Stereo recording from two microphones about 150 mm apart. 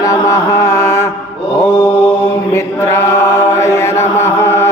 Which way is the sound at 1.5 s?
20° left (ahead or behind).